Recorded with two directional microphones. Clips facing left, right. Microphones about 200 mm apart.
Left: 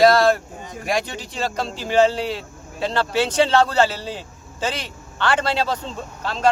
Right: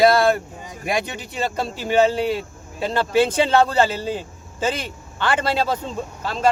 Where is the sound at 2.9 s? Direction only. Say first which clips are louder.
Right 3 dB; 50° right (ahead or behind).